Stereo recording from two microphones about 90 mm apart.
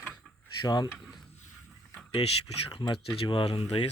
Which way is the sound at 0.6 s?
50° left (ahead or behind).